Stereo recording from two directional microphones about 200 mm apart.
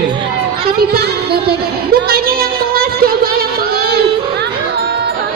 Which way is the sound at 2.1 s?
50° right (ahead or behind).